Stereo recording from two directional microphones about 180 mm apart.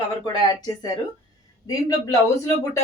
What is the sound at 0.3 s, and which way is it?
Speech, 20° left (ahead or behind).